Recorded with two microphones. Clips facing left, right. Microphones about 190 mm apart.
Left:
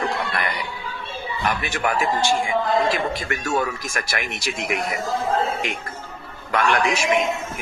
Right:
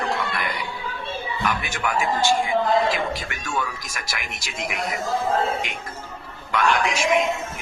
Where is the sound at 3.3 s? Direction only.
40° left (ahead or behind).